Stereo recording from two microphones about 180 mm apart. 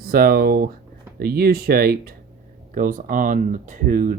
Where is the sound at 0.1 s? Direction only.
55° right (ahead or behind).